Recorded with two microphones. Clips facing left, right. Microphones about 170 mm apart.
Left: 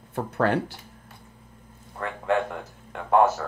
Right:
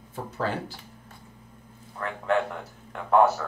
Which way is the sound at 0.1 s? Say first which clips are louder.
Left 6 dB; 65° left (ahead or behind).